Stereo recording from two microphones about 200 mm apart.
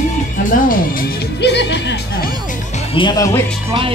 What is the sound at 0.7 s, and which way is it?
Speech, 50° left (ahead or behind).